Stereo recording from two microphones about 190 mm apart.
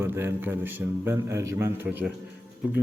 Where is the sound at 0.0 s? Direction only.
10° right (ahead or behind).